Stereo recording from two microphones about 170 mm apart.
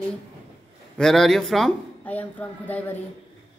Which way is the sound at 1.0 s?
Centre (ahead or behind).